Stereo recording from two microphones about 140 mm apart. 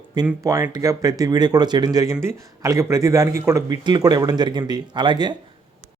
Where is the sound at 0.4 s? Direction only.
25° right (ahead or behind).